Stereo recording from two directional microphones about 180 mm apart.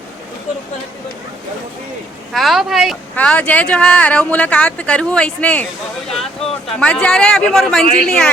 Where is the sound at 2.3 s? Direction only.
Centre (ahead or behind).